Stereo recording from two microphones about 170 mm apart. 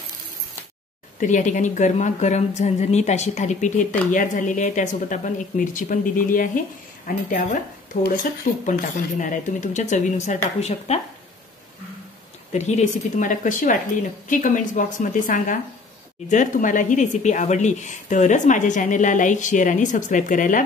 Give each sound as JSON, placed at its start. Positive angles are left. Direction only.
{"t": 1.2, "sound": "speech", "side_deg": 45}
{"t": 12.5, "sound": "speech", "side_deg": 45}